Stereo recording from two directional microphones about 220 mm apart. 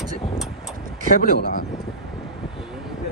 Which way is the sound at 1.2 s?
40° left (ahead or behind).